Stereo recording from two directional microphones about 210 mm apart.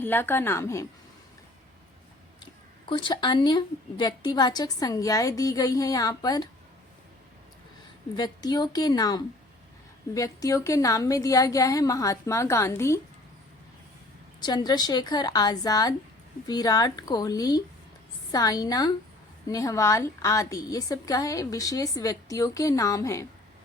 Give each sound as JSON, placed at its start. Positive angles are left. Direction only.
{"t": 0.0, "sound": "a woman's voice", "side_deg": 10}
{"t": 2.9, "sound": "a woman's voice", "side_deg": 20}
{"t": 8.1, "sound": "a woman's voice", "side_deg": 20}
{"t": 14.4, "sound": "a woman's voice", "side_deg": 20}